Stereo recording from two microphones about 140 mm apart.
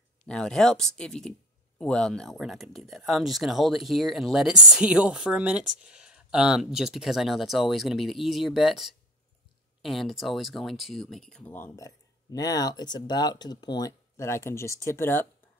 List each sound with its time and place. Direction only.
0.3 s speech: 5° left (ahead or behind)